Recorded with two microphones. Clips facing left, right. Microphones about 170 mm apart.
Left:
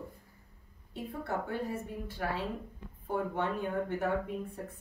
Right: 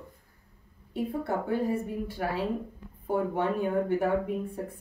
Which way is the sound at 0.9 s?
10° right (ahead or behind).